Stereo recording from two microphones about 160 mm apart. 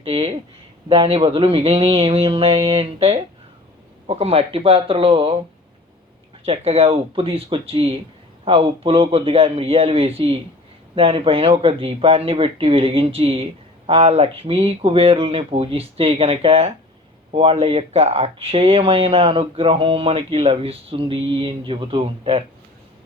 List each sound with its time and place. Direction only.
0.0 s speech: 35° right (ahead or behind)
6.4 s speech: 35° right (ahead or behind)